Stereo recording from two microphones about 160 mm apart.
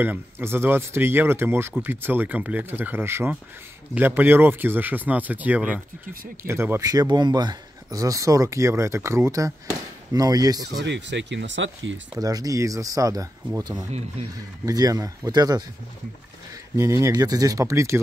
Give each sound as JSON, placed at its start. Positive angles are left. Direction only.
{"t": 0.0, "sound": "speech", "side_deg": -15}
{"t": 10.8, "sound": "speech", "side_deg": -90}
{"t": 12.2, "sound": "speech", "side_deg": -25}
{"t": 13.8, "sound": "speech", "side_deg": -45}
{"t": 14.7, "sound": "speech", "side_deg": -20}
{"t": 16.7, "sound": "speech", "side_deg": -20}